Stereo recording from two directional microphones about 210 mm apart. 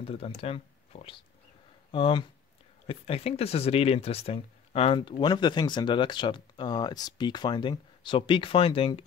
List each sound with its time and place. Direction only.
0.0 s speech: 30° left (ahead or behind)